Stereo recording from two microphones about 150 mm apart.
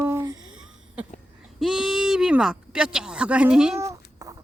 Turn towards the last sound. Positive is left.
turn(degrees=-20)  # may be behind; listen again after turning